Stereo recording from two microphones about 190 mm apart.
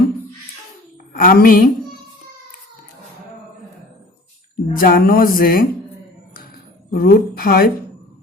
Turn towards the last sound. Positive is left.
turn(degrees=50)  # may be behind; listen again after turning